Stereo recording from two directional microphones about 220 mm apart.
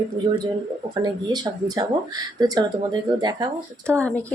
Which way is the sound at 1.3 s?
20° right (ahead or behind).